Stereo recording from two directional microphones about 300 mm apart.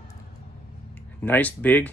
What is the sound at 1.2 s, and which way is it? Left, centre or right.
Speech, centre.